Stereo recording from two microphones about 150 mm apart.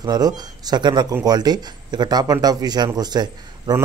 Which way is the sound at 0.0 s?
25° right (ahead or behind).